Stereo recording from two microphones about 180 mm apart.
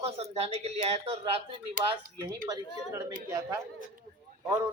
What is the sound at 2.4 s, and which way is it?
A man's voice, 20° right (ahead or behind).